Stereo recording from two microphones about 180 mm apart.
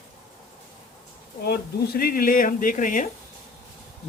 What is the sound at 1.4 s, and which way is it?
Speech, 55° left (ahead or behind).